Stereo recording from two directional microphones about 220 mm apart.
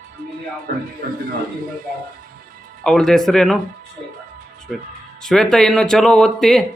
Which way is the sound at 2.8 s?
Centre (ahead or behind).